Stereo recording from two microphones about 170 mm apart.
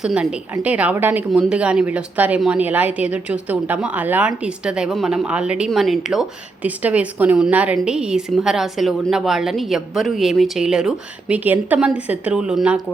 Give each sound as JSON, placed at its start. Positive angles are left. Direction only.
{"t": 0.0, "sound": "a woman's voice", "side_deg": -5}